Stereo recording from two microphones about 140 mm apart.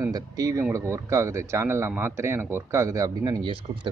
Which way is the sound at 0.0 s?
25° right (ahead or behind).